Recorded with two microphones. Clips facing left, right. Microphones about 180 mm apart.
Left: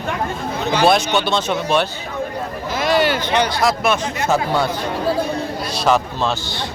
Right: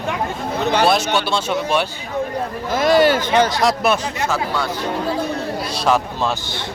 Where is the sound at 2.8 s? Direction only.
45° right (ahead or behind).